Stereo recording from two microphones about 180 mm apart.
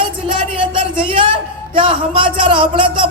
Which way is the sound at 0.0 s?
30° right (ahead or behind).